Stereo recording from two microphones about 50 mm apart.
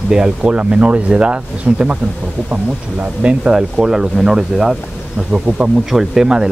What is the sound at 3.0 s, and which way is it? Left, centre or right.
Speech, right.